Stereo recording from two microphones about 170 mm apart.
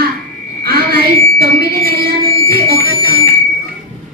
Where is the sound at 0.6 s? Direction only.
65° right (ahead or behind).